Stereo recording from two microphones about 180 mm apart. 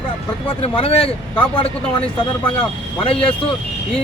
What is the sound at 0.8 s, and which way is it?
Speech, 30° left (ahead or behind).